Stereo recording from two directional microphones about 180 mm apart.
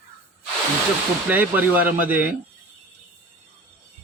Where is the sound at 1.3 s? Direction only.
10° right (ahead or behind).